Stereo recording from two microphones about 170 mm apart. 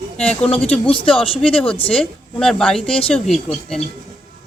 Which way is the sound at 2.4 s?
5° left (ahead or behind).